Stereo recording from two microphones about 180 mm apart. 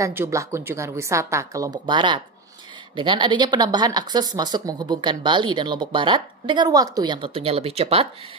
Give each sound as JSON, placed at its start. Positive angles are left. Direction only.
{"t": 0.0, "sound": "a woman's voice", "side_deg": -15}